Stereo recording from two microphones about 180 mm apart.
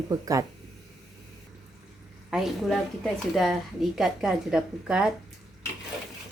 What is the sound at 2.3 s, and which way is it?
A woman's voice, centre (ahead or behind).